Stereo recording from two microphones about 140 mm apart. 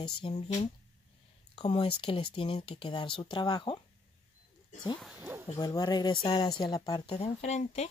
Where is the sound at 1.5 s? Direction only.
45° left (ahead or behind).